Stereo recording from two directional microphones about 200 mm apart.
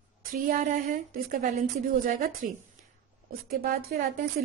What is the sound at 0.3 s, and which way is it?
A woman's voice, 45° right (ahead or behind).